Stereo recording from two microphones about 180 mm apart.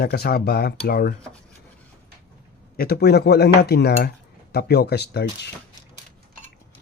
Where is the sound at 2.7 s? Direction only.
60° left (ahead or behind).